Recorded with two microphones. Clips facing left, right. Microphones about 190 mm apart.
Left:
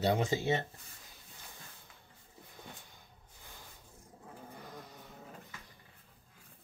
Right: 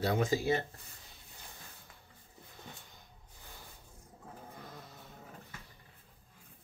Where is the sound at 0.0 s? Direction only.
25° left (ahead or behind).